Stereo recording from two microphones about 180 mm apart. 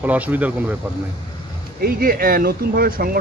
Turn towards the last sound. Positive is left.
turn(degrees=-55)  # may be behind; listen again after turning